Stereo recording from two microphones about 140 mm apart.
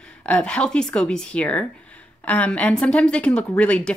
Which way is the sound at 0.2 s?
10° left (ahead or behind).